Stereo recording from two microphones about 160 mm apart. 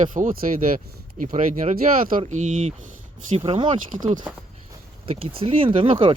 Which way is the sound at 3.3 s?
35° right (ahead or behind).